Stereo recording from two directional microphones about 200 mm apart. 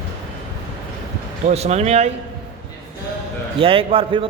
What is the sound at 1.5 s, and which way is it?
Speech, 35° right (ahead or behind).